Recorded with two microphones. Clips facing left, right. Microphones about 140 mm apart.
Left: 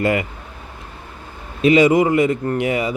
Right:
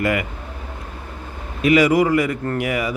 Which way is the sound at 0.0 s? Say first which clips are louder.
Left 2 dB; 25° left (ahead or behind).